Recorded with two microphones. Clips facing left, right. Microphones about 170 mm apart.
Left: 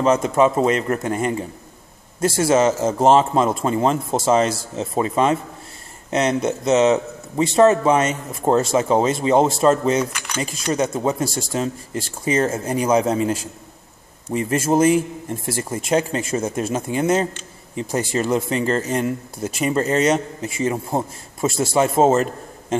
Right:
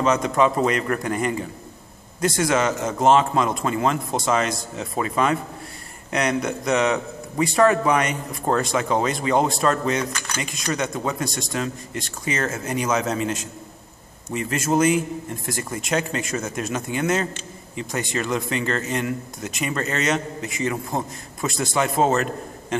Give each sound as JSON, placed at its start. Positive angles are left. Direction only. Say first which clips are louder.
{"t": 0.0, "sound": "speech", "louder": "left 3 dB", "side_deg": 30}